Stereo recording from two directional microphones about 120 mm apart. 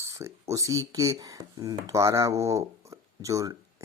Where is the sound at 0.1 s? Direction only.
25° right (ahead or behind).